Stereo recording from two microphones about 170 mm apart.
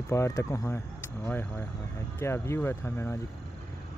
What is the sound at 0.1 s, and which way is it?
Speech, 15° left (ahead or behind).